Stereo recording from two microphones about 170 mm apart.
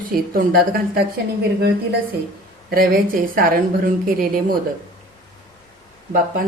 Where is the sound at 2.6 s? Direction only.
60° right (ahead or behind).